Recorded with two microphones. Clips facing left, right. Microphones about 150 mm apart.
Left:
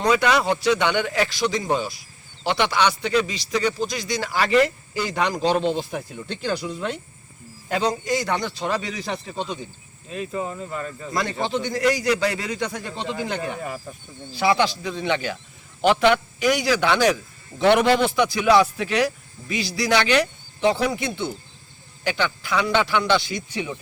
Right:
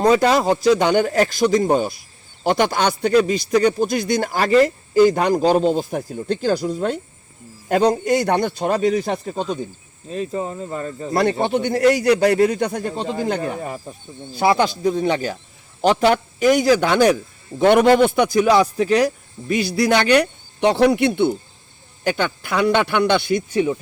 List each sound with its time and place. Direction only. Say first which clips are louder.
0.0 s a man's voice: right 5 dB; 35° right (ahead or behind)
7.7 s a man's voice: right 7 dB; 55° right (ahead or behind)
10.1 s speech: right 4 dB; 35° right (ahead or behind)
11.1 s a man's voice: right 7 dB; 60° right (ahead or behind)
18.4 s a man's voice: right 2 dB; 35° right (ahead or behind); by 21.3 s 60° right (ahead or behind)
22.0 s a man's voice: right 4 dB; 50° right (ahead or behind)